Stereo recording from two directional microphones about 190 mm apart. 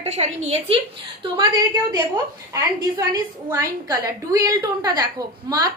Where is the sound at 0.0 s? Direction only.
35° right (ahead or behind).